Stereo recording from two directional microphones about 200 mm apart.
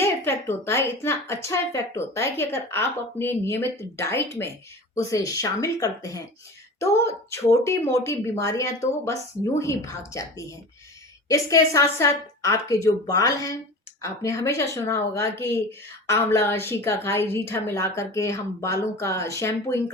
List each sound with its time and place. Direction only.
0.0 s a woman's voice: 10° left (ahead or behind)